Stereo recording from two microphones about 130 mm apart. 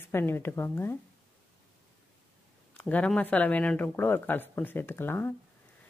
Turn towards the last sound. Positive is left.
turn(degrees=15)  # may be behind; listen again after turning